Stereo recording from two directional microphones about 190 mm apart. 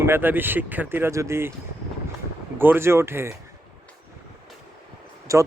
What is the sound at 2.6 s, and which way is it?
Speech, 10° right (ahead or behind).